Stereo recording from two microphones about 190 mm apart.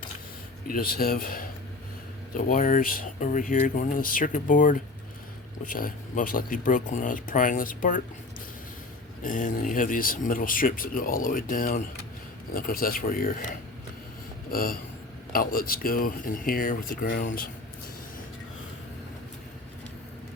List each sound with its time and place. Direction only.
0.7 s speech: 50° left (ahead or behind)
9.2 s speech: 45° left (ahead or behind)
14.5 s speech: 50° left (ahead or behind)